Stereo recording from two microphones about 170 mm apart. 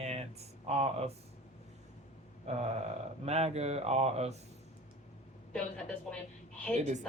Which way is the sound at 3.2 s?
40° right (ahead or behind).